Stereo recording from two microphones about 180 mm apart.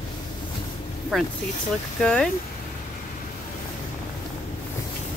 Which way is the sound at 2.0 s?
5° left (ahead or behind).